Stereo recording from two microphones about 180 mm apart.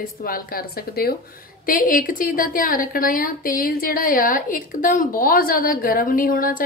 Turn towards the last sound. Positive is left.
turn(degrees=50)  # may be behind; listen again after turning